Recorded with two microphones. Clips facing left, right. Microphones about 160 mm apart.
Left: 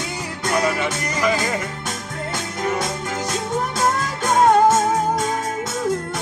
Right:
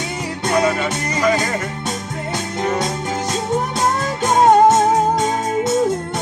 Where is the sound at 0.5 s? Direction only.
25° right (ahead or behind).